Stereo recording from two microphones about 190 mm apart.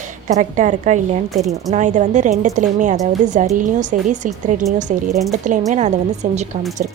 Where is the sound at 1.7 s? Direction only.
40° right (ahead or behind).